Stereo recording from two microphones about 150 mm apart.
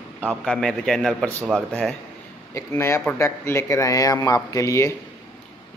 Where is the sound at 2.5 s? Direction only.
20° left (ahead or behind).